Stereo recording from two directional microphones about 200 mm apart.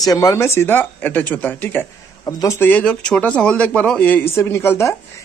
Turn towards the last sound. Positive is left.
turn(degrees=10)  # may be behind; listen again after turning